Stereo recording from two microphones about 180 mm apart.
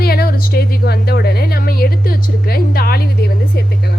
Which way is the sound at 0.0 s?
60° left (ahead or behind).